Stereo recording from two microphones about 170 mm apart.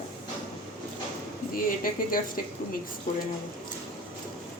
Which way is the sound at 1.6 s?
55° left (ahead or behind).